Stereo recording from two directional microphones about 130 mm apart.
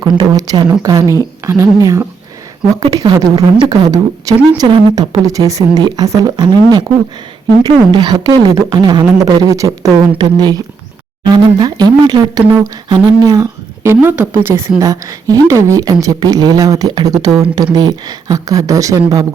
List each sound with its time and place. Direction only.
0.0 s a woman's voice: 35° right (ahead or behind)